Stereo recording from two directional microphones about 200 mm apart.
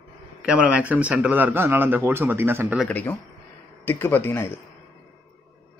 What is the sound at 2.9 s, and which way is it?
Speech, 10° left (ahead or behind).